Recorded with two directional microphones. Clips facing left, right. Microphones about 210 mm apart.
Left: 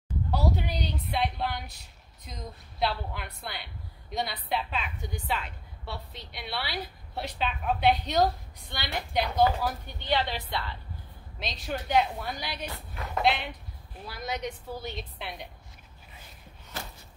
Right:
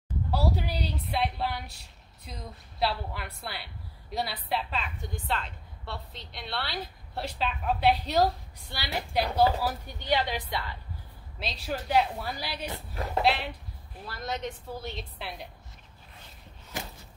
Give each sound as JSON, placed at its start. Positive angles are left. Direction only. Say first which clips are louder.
{"t": 0.3, "sound": "a sound", "louder": "even", "side_deg": -5}
{"t": 1.1, "sound": "a woman's voice", "louder": "even", "side_deg": -5}
{"t": 2.8, "sound": "a woman's voice", "louder": "even", "side_deg": 0}
{"t": 9.2, "sound": "speech", "louder": "even", "side_deg": -30}
{"t": 9.6, "sound": "a woman's voice", "louder": "even", "side_deg": -10}
{"t": 12.9, "sound": "speech", "louder": "right 4 dB", "side_deg": -30}
{"t": 13.2, "sound": "a woman's voice", "louder": "even", "side_deg": 0}
{"t": 16.7, "sound": "a sound", "louder": "right 2 dB", "side_deg": -15}